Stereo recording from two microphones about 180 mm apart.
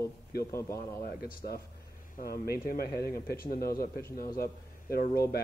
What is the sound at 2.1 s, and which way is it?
A man's voice, 60° left (ahead or behind).